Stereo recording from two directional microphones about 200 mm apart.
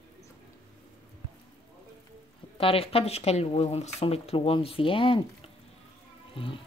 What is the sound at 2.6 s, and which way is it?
Speech, 30° left (ahead or behind).